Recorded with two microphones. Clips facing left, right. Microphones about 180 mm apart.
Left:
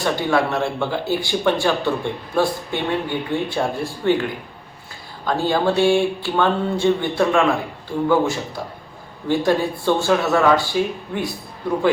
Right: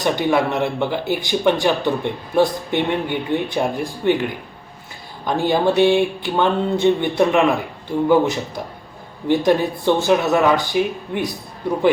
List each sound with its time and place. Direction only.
0.0 s speech: 20° right (ahead or behind)